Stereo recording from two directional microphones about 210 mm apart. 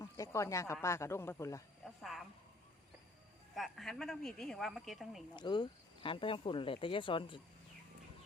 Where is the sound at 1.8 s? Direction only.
Centre (ahead or behind).